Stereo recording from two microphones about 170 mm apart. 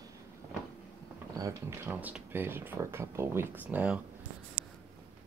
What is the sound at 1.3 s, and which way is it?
Speech, 20° right (ahead or behind).